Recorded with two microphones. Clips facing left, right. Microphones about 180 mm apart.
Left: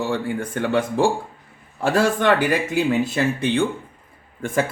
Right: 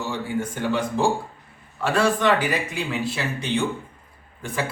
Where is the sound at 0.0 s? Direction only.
55° left (ahead or behind).